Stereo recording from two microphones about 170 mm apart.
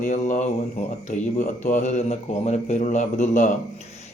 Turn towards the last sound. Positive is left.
turn(degrees=45)  # may be behind; listen again after turning